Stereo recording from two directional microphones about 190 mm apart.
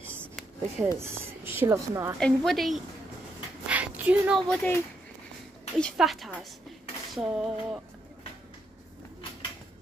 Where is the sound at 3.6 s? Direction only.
5° right (ahead or behind).